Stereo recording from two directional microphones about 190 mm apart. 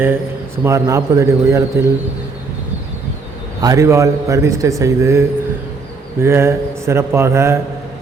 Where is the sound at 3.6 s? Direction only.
15° right (ahead or behind).